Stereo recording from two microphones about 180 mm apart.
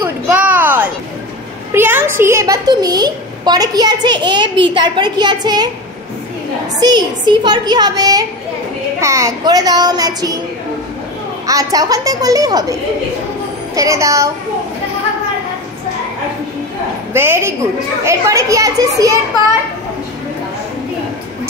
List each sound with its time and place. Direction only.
0.0 s a sound: 10° right (ahead or behind)
1.7 s a woman's voice: 10° right (ahead or behind)
6.8 s a woman's voice: 25° right (ahead or behind)
11.4 s a woman's voice: 20° right (ahead or behind)
13.7 s a child's voice: 20° right (ahead or behind)
17.1 s a child's voice: 15° right (ahead or behind)